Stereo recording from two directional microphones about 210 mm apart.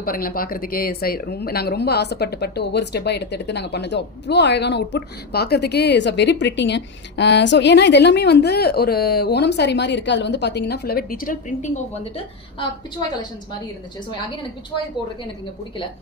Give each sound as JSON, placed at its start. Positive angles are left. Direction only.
{"t": 0.0, "sound": "speech", "side_deg": 45}